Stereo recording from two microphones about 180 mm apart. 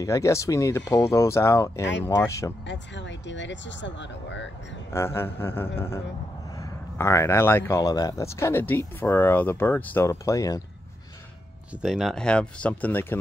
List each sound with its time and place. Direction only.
0.0 s speech: 15° left (ahead or behind)
2.6 s speech: 90° left
4.9 s speech: 15° left (ahead or behind)
11.7 s speech: centre (ahead or behind)